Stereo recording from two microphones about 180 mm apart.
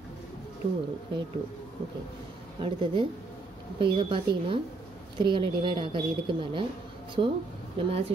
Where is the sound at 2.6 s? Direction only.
25° right (ahead or behind).